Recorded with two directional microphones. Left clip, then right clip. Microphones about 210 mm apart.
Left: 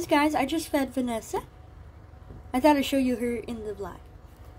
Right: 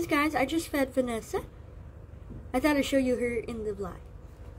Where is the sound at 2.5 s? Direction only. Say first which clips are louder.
Left 4 dB; 10° left (ahead or behind).